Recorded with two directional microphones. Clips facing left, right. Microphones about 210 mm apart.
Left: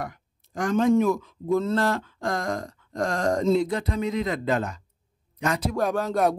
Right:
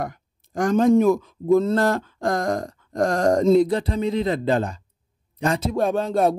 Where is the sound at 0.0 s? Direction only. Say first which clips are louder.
Right 5 dB; 45° right (ahead or behind).